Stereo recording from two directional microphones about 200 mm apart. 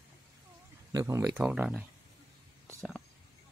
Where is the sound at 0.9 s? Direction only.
15° right (ahead or behind).